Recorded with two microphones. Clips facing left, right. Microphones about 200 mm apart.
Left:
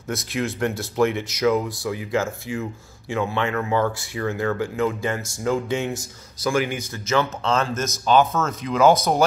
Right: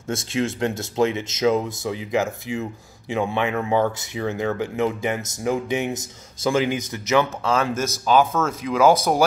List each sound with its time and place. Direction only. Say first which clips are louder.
0.1 s speech: right 2 dB; 25° right (ahead or behind); by 8.9 s 5° right (ahead or behind)